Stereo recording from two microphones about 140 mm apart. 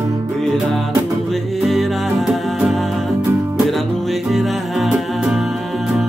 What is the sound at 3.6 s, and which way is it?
Music, centre (ahead or behind).